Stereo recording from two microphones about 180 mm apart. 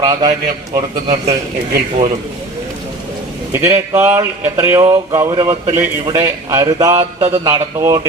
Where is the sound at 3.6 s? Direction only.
15° right (ahead or behind).